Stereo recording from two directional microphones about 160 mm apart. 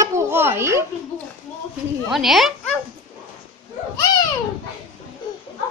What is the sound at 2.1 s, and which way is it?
Speech, centre (ahead or behind).